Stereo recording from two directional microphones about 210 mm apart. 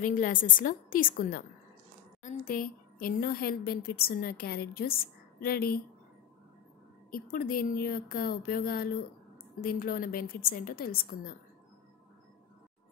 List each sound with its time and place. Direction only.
0.0 s a woman's voice: 40° left (ahead or behind)
7.1 s a woman's voice: 45° left (ahead or behind)